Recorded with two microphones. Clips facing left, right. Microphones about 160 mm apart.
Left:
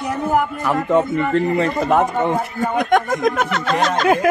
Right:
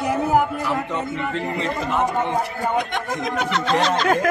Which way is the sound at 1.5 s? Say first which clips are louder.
Left 6 dB; 50° left (ahead or behind).